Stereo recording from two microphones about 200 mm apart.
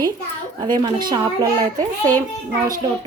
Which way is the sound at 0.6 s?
20° right (ahead or behind).